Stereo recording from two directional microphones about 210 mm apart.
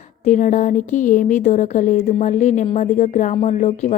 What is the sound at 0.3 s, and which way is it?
Speech, 35° left (ahead or behind).